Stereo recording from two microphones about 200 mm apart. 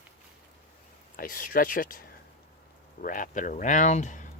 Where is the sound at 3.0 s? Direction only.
40° left (ahead or behind).